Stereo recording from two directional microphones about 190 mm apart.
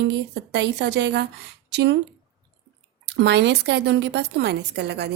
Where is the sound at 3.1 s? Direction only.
65° right (ahead or behind).